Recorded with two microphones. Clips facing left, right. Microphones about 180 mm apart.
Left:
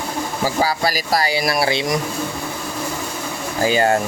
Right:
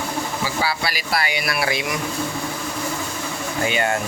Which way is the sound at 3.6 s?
35° left (ahead or behind).